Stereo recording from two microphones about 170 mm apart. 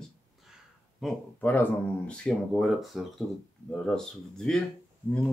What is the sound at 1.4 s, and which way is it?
Speech, 10° left (ahead or behind).